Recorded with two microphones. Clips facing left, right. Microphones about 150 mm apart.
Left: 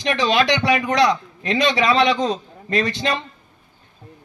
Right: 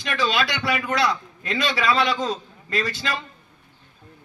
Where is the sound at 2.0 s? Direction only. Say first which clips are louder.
Left 5 dB; 20° left (ahead or behind).